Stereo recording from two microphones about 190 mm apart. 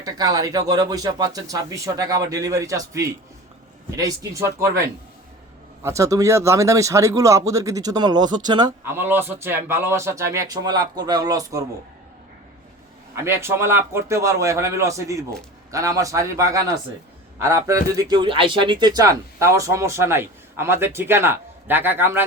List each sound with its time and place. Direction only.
0.0 s a man's voice: 20° right (ahead or behind)
5.8 s a man's voice: 15° right (ahead or behind)
13.2 s a man's voice: 15° right (ahead or behind)